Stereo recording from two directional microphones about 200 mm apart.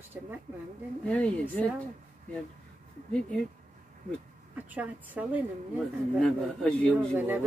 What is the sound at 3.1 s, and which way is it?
Speech, 5° left (ahead or behind).